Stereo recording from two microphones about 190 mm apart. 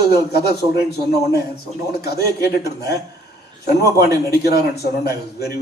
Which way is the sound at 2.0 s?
55° left (ahead or behind).